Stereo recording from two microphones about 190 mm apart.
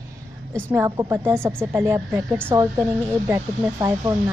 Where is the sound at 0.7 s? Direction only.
15° right (ahead or behind).